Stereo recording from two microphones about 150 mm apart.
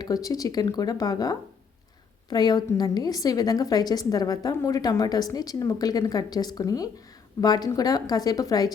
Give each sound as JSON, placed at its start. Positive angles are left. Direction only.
{"t": 0.0, "sound": "a woman's voice", "side_deg": 25}